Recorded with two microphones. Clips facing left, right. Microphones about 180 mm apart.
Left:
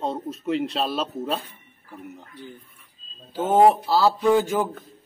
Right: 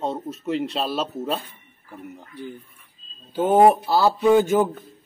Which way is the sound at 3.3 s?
15° right (ahead or behind).